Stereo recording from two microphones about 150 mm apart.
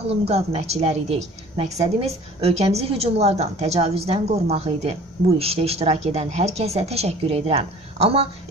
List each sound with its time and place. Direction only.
0.1 s a woman's voice: 45° right (ahead or behind)